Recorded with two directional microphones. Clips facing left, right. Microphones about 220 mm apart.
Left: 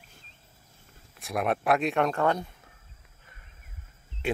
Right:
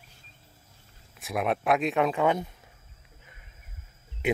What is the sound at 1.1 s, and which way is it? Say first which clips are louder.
Speech: even; centre (ahead or behind).